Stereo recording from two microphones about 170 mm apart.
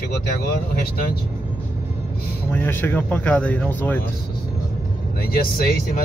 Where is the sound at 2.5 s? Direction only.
10° left (ahead or behind).